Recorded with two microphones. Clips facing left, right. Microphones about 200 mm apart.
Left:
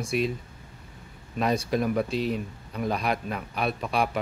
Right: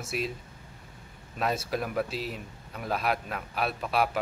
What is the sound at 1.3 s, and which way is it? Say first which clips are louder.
Speech: left 5 dB; 5° right (ahead or behind).